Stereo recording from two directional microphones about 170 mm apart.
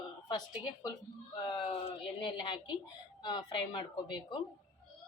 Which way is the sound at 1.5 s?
30° left (ahead or behind).